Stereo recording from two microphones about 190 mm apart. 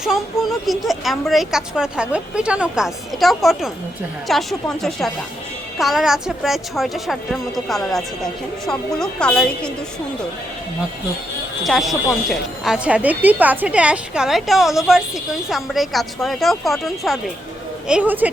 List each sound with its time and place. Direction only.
0.6 s speech: centre (ahead or behind)
11.6 s speech: centre (ahead or behind)